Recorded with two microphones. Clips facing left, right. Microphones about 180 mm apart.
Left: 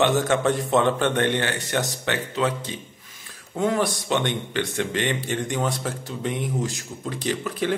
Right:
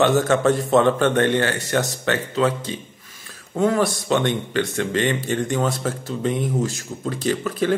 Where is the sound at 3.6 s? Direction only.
15° left (ahead or behind).